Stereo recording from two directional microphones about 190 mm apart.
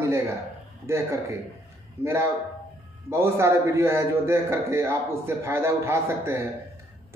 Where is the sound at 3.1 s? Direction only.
15° right (ahead or behind).